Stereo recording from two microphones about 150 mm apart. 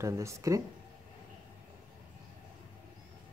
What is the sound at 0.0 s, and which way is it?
Speech, 20° right (ahead or behind).